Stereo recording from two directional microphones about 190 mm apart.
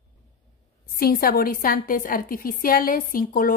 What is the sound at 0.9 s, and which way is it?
A woman's voice, 50° left (ahead or behind).